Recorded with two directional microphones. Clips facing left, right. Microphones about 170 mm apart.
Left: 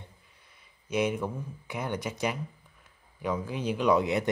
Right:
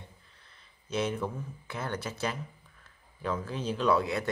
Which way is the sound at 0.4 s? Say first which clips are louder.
Even; 10° left (ahead or behind).